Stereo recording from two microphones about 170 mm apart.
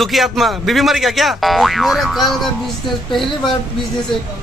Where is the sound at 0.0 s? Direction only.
Centre (ahead or behind).